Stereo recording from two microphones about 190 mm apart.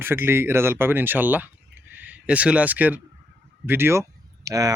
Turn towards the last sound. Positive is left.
turn(degrees=-20)  # may be behind; listen again after turning